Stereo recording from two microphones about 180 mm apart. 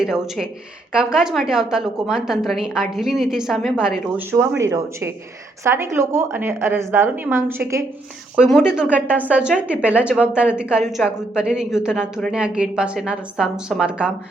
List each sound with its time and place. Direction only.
0.0 s a woman's voice: 5° right (ahead or behind)
4.4 s a woman's voice: 15° right (ahead or behind)
8.4 s a woman's voice: centre (ahead or behind)